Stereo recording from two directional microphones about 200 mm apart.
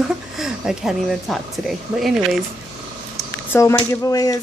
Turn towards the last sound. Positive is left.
turn(degrees=15)  # may be behind; listen again after turning